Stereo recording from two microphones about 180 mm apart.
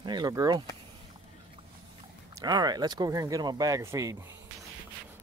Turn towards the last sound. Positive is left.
turn(degrees=-15)  # may be behind; listen again after turning